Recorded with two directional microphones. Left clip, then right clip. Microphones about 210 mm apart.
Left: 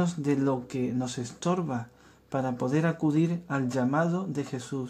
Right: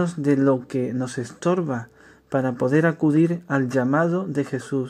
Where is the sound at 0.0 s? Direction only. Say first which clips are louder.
Right 7 dB; 20° right (ahead or behind).